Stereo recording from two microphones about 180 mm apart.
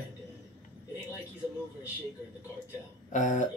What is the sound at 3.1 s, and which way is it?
Speech, 45° left (ahead or behind).